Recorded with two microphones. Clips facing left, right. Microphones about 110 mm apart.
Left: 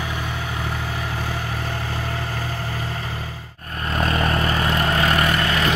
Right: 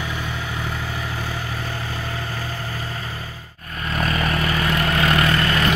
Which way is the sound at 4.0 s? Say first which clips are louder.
Left 1 dB; 30° left (ahead or behind).